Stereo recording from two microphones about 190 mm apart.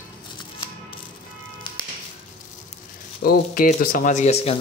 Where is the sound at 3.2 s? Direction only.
50° left (ahead or behind).